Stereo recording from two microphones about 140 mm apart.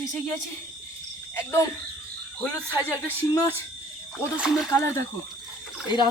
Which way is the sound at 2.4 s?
10° left (ahead or behind).